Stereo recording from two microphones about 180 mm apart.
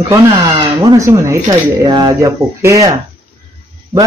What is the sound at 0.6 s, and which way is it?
Speech, 25° right (ahead or behind).